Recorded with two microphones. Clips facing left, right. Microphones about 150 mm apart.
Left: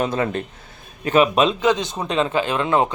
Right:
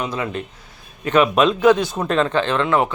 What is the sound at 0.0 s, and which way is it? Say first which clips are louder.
Speech: left 3 dB; 45° left (ahead or behind).